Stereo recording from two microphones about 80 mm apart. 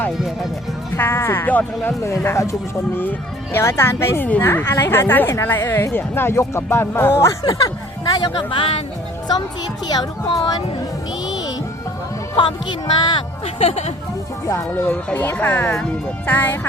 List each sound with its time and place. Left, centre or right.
0.9 s speech: left
2.0 s speech: left
8.1 s speech: left
8.4 s speech: left
9.8 s speech: left
11.3 s music: left
12.4 s speech: left
14.4 s speech: left